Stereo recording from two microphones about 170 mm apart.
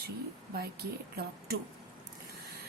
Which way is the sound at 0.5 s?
70° right (ahead or behind).